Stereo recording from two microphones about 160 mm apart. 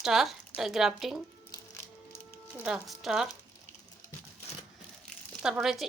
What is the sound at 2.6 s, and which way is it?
Speech, 5° right (ahead or behind).